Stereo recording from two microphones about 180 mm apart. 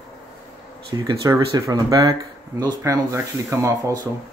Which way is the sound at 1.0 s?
15° right (ahead or behind).